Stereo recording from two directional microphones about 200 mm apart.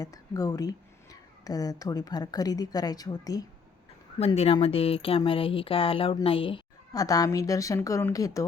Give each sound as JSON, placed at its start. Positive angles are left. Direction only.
{"t": 0.0, "sound": "speech", "side_deg": 20}
{"t": 4.2, "sound": "speech", "side_deg": 30}